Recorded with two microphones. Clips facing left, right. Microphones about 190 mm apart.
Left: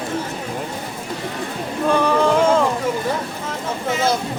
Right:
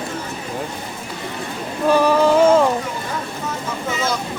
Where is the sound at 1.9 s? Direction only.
5° right (ahead or behind).